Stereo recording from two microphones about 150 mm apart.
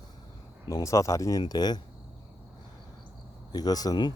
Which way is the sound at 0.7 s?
20° left (ahead or behind).